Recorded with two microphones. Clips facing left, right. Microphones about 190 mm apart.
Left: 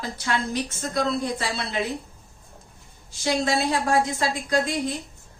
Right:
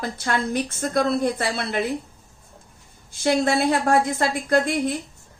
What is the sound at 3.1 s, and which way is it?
A woman's voice, 55° right (ahead or behind).